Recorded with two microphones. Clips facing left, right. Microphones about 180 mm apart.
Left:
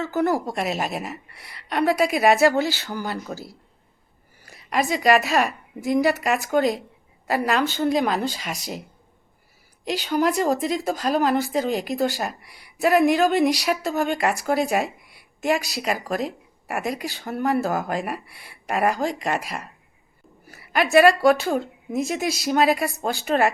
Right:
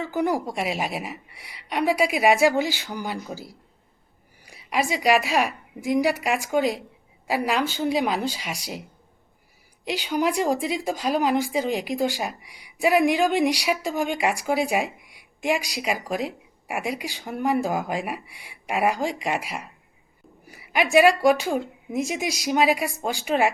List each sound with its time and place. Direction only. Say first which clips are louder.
0.0 s speech: left 2 dB; 15° right (ahead or behind)
9.8 s speech: left 2 dB; 10° right (ahead or behind)